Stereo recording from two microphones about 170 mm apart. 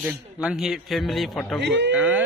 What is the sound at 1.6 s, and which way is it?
Speech, 90° right.